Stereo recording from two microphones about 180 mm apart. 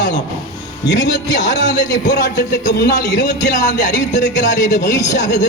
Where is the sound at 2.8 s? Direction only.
65° left (ahead or behind).